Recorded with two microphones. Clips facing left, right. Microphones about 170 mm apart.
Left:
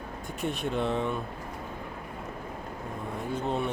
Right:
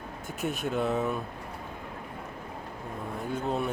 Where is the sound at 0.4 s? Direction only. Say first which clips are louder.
Even; centre (ahead or behind).